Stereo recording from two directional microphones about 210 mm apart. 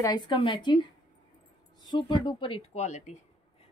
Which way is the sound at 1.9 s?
20° left (ahead or behind).